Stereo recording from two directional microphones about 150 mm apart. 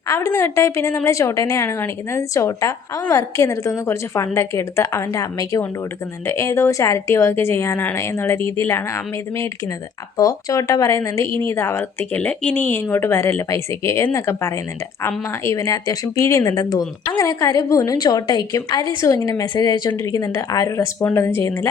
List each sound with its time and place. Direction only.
0.1 s a woman's voice: 20° left (ahead or behind)